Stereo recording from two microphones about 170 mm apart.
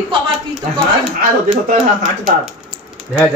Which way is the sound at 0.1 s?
25° right (ahead or behind).